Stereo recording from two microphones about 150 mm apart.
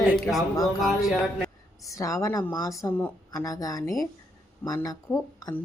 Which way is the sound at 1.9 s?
20° left (ahead or behind).